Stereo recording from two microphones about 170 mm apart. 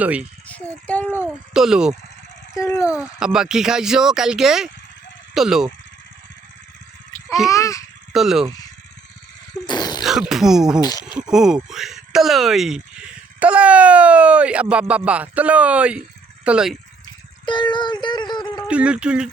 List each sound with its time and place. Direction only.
0.0 s speech: 10° right (ahead or behind)
0.4 s a sound: 10° left (ahead or behind)
1.5 s speech: 5° right (ahead or behind)
2.6 s speech: 20° left (ahead or behind)
2.8 s speech: 5° right (ahead or behind)
7.5 s a sound: 20° left (ahead or behind)
8.1 s speech: centre (ahead or behind)
9.6 s a sound: 25° left (ahead or behind)
10.0 s speech: centre (ahead or behind)
10.8 s speech: 20° left (ahead or behind)
11.3 s speech: 5° right (ahead or behind)
17.4 s a sound: 25° left (ahead or behind)
18.7 s speech: 5° right (ahead or behind)